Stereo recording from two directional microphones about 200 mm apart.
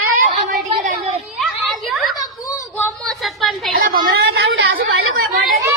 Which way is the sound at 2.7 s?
5° left (ahead or behind).